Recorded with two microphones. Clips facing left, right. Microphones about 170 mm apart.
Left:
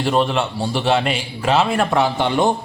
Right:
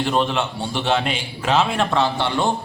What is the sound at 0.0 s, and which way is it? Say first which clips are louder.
A man's voice: left 2 dB; centre (ahead or behind).